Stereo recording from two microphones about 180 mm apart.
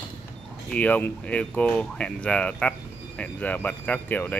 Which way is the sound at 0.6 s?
10° left (ahead or behind).